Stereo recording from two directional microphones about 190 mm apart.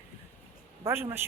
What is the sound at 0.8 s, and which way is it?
Speech, 10° right (ahead or behind).